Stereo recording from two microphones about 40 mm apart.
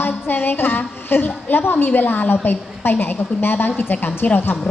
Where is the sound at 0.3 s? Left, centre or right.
Left.